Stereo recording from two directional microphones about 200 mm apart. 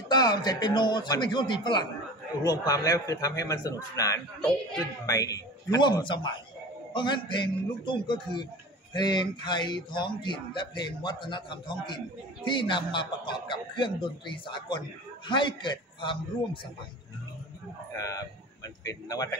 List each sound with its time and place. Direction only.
0.1 s a man's voice: 20° left (ahead or behind)
17.9 s a man's voice: 15° left (ahead or behind)